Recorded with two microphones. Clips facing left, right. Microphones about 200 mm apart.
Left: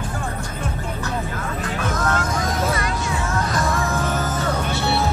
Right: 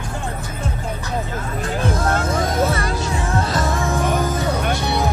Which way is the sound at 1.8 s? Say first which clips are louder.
Right 2 dB; 30° right (ahead or behind).